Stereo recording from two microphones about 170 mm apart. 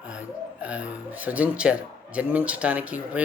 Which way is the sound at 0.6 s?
10° right (ahead or behind).